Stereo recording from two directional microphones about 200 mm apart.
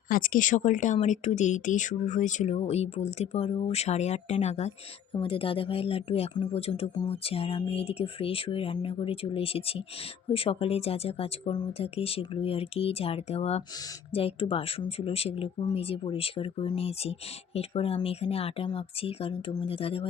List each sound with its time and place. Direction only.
0.1 s speech: 45° left (ahead or behind); by 20.1 s 30° left (ahead or behind)